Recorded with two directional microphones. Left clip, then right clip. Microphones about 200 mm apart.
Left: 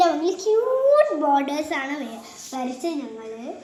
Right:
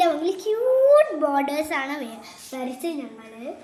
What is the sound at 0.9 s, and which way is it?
A woman's voice, 35° right (ahead or behind).